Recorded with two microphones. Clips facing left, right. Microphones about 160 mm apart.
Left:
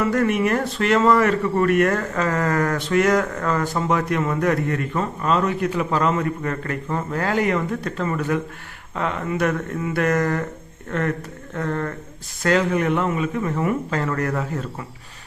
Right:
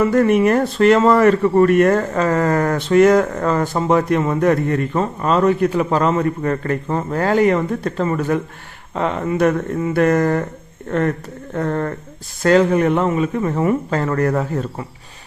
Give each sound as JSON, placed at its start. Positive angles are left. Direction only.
{"t": 0.1, "sound": "speech", "side_deg": -35}
{"t": 11.5, "sound": "speech", "side_deg": -35}